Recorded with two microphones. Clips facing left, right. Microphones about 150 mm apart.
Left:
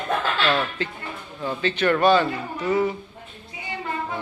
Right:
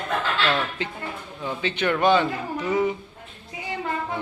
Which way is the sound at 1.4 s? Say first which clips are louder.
Left 3 dB; 15° right (ahead or behind).